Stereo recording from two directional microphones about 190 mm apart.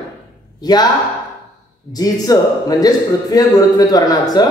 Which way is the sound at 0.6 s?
20° left (ahead or behind).